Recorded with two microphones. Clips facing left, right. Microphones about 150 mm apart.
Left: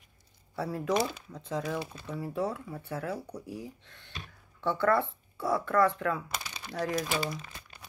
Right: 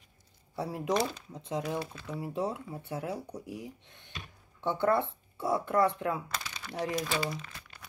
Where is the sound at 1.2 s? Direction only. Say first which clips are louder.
Even; 20° right (ahead or behind).